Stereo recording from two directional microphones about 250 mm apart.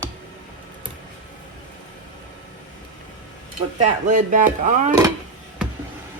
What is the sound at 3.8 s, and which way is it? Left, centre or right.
Speech, right.